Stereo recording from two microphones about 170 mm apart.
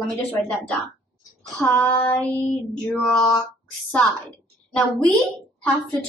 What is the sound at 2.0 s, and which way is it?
A woman's voice, 10° left (ahead or behind).